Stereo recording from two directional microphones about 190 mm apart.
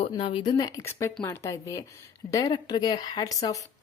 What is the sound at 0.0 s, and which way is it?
Speech, 25° left (ahead or behind).